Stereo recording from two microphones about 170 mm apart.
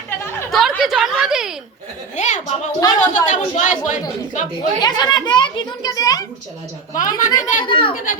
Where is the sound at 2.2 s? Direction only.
45° left (ahead or behind).